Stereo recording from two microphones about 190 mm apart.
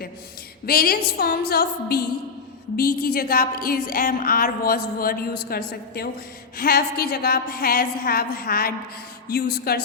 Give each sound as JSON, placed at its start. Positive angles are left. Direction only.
{"t": 0.6, "sound": "a woman's voice", "side_deg": 55}